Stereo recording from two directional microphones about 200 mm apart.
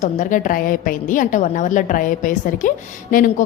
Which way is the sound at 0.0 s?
40° left (ahead or behind).